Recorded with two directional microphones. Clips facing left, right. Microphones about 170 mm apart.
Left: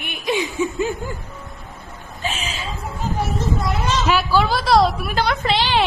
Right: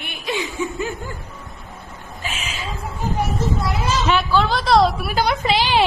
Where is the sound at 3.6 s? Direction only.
5° right (ahead or behind).